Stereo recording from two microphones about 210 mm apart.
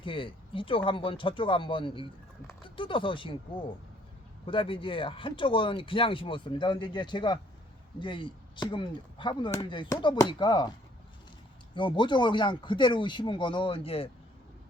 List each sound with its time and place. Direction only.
0.0 s speech: 25° left (ahead or behind)
11.7 s speech: 20° left (ahead or behind)